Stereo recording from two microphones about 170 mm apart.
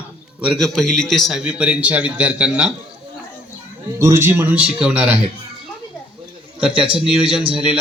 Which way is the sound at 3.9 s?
15° right (ahead or behind).